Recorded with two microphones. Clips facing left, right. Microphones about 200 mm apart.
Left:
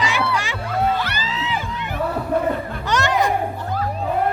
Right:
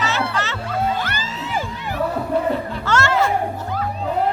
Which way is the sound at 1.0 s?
50° right (ahead or behind).